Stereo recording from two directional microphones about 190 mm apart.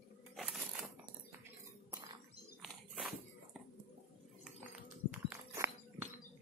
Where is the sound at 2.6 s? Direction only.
Centre (ahead or behind).